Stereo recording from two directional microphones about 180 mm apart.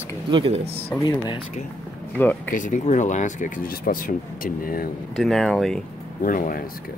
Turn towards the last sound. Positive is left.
turn(degrees=50)  # may be behind; listen again after turning